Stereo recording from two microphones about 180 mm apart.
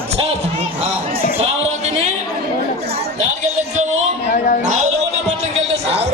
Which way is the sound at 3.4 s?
40° right (ahead or behind).